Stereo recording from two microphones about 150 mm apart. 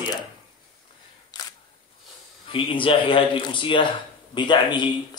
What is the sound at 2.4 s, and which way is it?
Speech, 35° left (ahead or behind).